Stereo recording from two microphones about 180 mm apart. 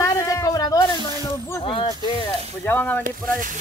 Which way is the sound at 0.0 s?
20° left (ahead or behind).